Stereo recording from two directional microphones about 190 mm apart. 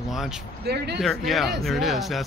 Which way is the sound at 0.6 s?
60° right (ahead or behind).